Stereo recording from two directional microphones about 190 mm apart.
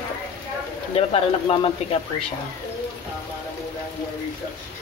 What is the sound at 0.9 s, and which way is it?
Speech, 30° left (ahead or behind).